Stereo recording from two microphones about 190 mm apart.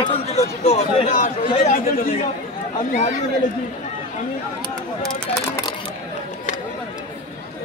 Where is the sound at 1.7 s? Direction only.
45° left (ahead or behind).